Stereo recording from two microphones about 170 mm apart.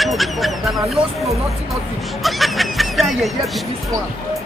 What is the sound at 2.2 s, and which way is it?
Speech, centre (ahead or behind).